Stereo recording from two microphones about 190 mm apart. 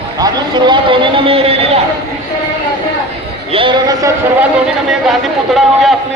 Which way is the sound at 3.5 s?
25° right (ahead or behind).